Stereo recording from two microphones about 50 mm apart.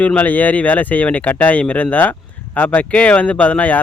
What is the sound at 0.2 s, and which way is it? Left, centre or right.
Speech, left.